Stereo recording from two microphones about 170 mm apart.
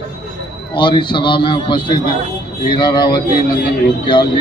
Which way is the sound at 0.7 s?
30° left (ahead or behind).